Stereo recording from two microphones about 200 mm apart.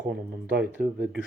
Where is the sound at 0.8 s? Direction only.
45° right (ahead or behind).